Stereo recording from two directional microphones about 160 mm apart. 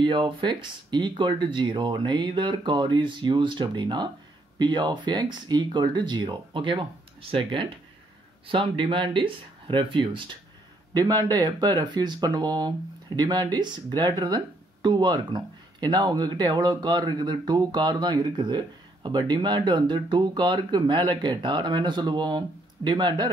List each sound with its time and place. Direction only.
0.0 s speech: 30° right (ahead or behind)